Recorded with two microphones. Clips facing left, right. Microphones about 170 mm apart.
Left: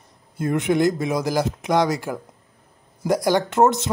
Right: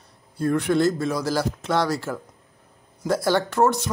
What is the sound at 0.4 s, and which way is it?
Speech, 20° left (ahead or behind).